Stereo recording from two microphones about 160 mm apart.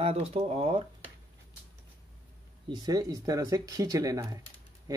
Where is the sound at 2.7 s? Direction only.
20° right (ahead or behind).